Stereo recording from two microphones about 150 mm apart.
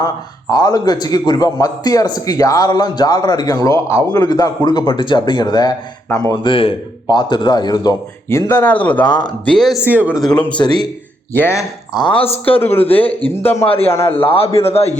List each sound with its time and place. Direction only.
0.5 s a man's voice: 25° left (ahead or behind); by 9.0 s 10° left (ahead or behind)
9.0 s a man's voice: 30° left (ahead or behind)
9.5 s speech: 5° left (ahead or behind)
9.8 s speech: 10° right (ahead or behind)
10.3 s speech: 10° left (ahead or behind)
10.6 s a man's voice: 30° left (ahead or behind)
11.3 s speech: 15° left (ahead or behind)
11.9 s a man's voice: 35° left (ahead or behind)
12.5 s speech: 15° left (ahead or behind)
13.7 s a man's voice: 40° left (ahead or behind)